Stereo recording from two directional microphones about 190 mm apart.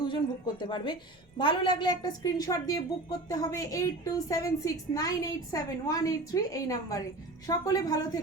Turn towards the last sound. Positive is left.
turn(degrees=20)  # may be behind; listen again after turning